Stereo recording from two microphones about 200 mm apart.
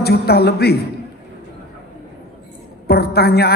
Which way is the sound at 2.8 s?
50° left (ahead or behind).